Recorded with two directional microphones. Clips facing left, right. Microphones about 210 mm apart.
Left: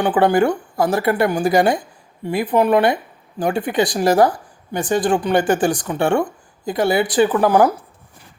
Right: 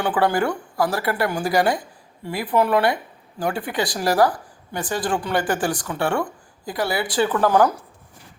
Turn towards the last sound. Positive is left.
turn(degrees=15)  # may be behind; listen again after turning